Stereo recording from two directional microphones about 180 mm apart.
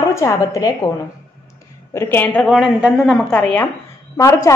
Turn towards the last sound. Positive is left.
turn(degrees=20)  # may be behind; listen again after turning